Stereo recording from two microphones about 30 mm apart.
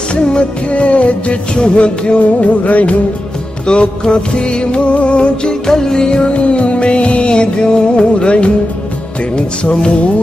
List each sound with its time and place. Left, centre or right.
0.1 s music: left
3.7 s music: left
5.7 s music: left